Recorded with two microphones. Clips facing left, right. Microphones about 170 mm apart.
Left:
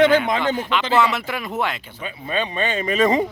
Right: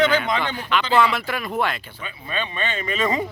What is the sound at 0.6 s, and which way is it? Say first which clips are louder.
Speech: even; 20° left (ahead or behind).